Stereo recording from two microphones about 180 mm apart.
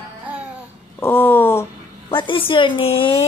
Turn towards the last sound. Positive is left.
turn(degrees=30)  # may be behind; listen again after turning